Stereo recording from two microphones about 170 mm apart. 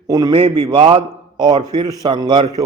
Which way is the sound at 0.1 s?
25° right (ahead or behind).